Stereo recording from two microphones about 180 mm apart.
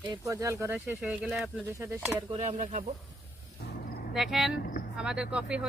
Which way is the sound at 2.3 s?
40° right (ahead or behind).